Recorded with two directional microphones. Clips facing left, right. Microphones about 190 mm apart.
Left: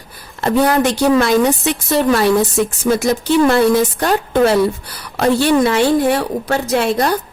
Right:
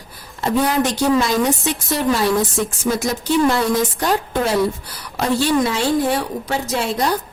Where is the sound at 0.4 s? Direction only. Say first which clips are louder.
Left 4 dB; 65° left (ahead or behind).